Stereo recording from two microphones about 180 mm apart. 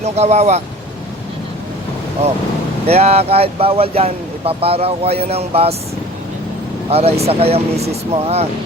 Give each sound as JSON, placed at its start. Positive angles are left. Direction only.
{"t": 0.0, "sound": "speech", "side_deg": -40}
{"t": 2.8, "sound": "speech", "side_deg": -35}
{"t": 6.9, "sound": "speech", "side_deg": -35}